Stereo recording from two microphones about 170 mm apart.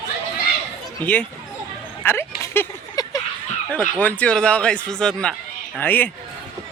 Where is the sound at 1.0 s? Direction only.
10° left (ahead or behind).